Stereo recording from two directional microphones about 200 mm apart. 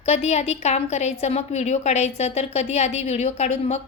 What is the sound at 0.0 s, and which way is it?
A woman's voice, 30° left (ahead or behind).